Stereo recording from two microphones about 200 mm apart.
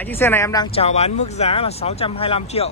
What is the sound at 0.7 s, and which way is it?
Speech, 30° left (ahead or behind).